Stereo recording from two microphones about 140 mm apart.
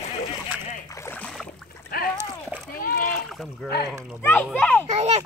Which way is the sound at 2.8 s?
90° left.